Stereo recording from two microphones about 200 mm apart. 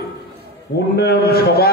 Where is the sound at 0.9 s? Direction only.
55° left (ahead or behind).